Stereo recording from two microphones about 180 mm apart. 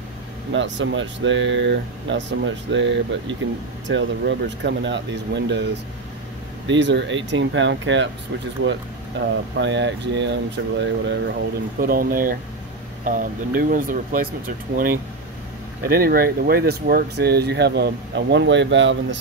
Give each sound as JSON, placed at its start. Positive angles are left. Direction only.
{"t": 0.5, "sound": "speech", "side_deg": -90}
{"t": 6.7, "sound": "speech", "side_deg": -80}
{"t": 11.8, "sound": "speech", "side_deg": -55}
{"t": 15.8, "sound": "speech", "side_deg": -55}